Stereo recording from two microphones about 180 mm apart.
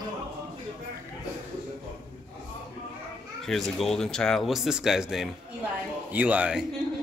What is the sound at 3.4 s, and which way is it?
A man's voice, centre (ahead or behind).